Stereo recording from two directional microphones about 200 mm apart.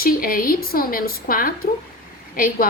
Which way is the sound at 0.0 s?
45° left (ahead or behind).